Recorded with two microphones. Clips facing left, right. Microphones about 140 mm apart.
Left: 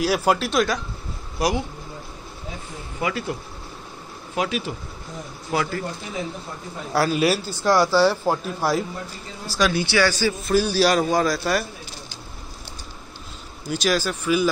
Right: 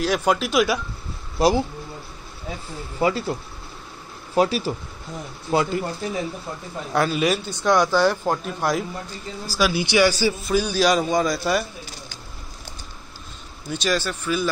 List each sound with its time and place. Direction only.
0.0 s a man's voice: 5° left (ahead or behind)
1.4 s speech: 25° right (ahead or behind)
3.0 s speech: 30° right (ahead or behind)
4.4 s speech: 35° right (ahead or behind)
5.5 s speech: 25° right (ahead or behind)
6.9 s a man's voice: 5° left (ahead or behind)
9.5 s a man's voice: 5° right (ahead or behind)
10.4 s a man's voice: 5° left (ahead or behind)
13.7 s speech: 10° left (ahead or behind)